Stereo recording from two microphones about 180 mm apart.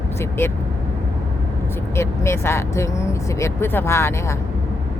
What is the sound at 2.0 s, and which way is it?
Speech, 15° left (ahead or behind).